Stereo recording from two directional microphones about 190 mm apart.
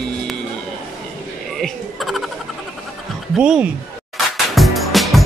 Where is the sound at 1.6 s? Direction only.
Centre (ahead or behind).